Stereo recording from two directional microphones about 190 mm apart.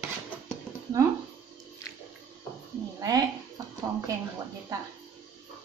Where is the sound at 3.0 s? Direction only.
20° right (ahead or behind).